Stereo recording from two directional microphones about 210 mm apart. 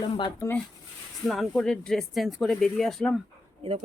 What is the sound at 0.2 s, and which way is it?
Speech, 15° left (ahead or behind).